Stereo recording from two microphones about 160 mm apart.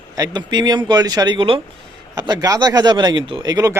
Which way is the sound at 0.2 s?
25° right (ahead or behind).